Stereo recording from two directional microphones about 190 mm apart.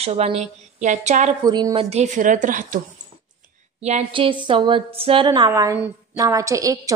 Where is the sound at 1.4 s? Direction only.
20° right (ahead or behind); by 2.8 s 45° right (ahead or behind).